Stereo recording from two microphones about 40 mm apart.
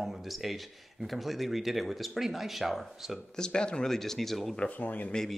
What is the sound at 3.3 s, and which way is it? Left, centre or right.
Speech, left.